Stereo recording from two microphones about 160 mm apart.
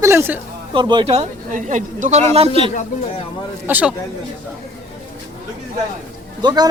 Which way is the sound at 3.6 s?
10° right (ahead or behind).